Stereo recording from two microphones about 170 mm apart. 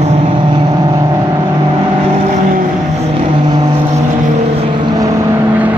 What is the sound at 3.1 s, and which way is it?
Vehicle, 25° right (ahead or behind).